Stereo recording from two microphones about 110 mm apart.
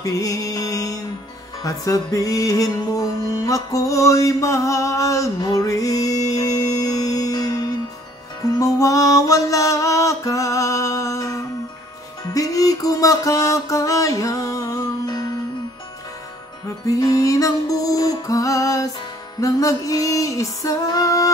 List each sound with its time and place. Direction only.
0.0 s music: 30° left (ahead or behind)
16.6 s music: 35° left (ahead or behind)